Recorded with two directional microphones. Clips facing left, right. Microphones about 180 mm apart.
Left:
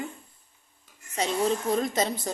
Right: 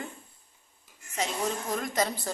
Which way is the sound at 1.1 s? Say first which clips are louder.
Left 5 dB; 30° left (ahead or behind).